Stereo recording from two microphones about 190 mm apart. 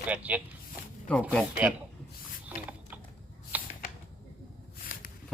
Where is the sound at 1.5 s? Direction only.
10° right (ahead or behind).